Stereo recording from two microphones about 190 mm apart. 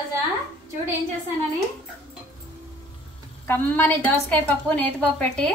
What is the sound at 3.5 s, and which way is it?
A woman's voice, 10° left (ahead or behind).